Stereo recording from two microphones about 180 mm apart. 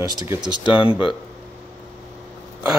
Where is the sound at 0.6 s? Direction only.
30° left (ahead or behind).